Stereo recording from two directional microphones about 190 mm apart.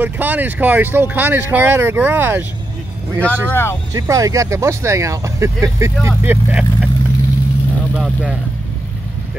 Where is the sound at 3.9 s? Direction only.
15° right (ahead or behind).